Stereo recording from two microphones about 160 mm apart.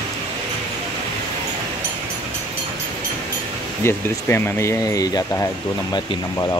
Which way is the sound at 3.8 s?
15° left (ahead or behind).